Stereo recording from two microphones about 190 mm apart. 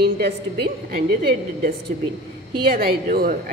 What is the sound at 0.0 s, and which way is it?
A woman's voice, 55° right (ahead or behind).